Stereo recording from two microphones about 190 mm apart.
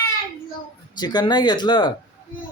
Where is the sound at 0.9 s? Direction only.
20° left (ahead or behind).